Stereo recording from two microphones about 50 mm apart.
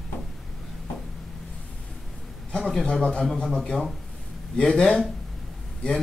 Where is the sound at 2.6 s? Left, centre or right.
Centre.